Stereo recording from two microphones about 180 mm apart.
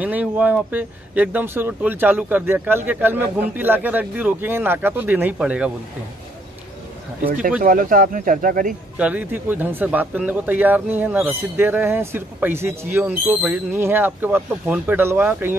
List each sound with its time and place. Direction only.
0.0 s speech: 10° right (ahead or behind)
7.6 s speech: 50° right (ahead or behind)
8.9 s speech: 10° right (ahead or behind)